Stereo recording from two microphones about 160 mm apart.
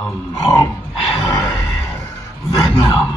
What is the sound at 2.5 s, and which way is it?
Speech, 25° left (ahead or behind).